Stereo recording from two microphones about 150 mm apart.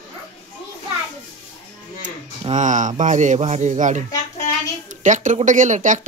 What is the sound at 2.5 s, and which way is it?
Speech, 55° right (ahead or behind).